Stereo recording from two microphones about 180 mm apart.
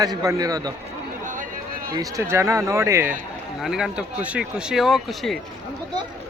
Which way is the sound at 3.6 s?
5° right (ahead or behind).